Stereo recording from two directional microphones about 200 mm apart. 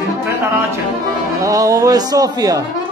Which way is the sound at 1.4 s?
15° right (ahead or behind).